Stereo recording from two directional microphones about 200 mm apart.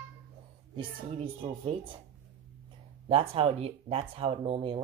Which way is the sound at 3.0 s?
30° right (ahead or behind).